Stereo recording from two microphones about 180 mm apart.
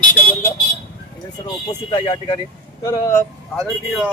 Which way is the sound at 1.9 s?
25° left (ahead or behind).